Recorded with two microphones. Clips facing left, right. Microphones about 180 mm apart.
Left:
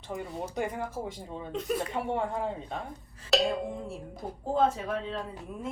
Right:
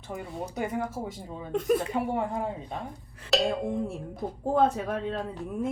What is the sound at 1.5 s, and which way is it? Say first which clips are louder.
Speech: right 7 dB; 50° right (ahead or behind).